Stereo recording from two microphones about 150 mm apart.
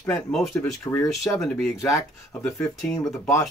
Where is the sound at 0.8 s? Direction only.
15° left (ahead or behind).